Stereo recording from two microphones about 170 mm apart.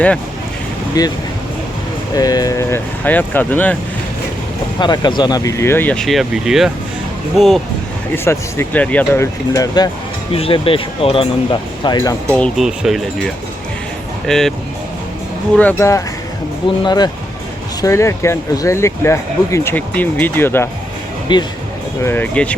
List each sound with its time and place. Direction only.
1.0 s speech: 20° left (ahead or behind)
2.1 s speech: 20° left (ahead or behind)
4.8 s speech: 25° left (ahead or behind); by 7.6 s centre (ahead or behind)
8.1 s speech: 15° left (ahead or behind)
10.3 s speech: 35° left (ahead or behind)
12.3 s speech: 5° left (ahead or behind)
15.5 s speech: 10° left (ahead or behind)
21.3 s speech: 25° left (ahead or behind)
22.0 s speech: 10° left (ahead or behind)